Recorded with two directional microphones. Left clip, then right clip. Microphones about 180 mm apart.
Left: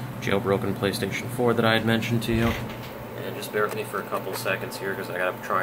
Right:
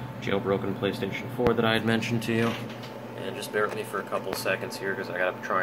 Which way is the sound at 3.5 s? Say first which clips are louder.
Left 2 dB; 10° right (ahead or behind).